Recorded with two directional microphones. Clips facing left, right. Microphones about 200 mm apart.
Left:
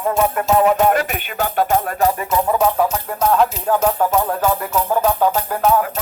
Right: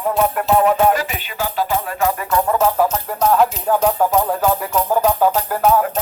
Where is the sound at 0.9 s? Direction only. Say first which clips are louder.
Left 1 dB; 60° left (ahead or behind).